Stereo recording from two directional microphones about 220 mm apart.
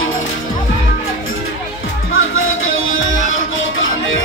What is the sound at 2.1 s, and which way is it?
Music, 65° left (ahead or behind).